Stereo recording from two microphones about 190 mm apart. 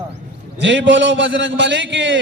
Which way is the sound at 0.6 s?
70° right (ahead or behind).